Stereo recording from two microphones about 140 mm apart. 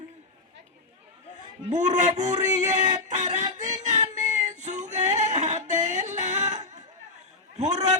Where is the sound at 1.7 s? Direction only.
60° right (ahead or behind).